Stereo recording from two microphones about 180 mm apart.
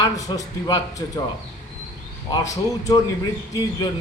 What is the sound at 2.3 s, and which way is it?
Speech, 20° left (ahead or behind).